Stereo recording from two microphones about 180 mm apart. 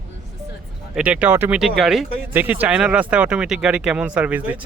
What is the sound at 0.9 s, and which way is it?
Speech, 5° right (ahead or behind).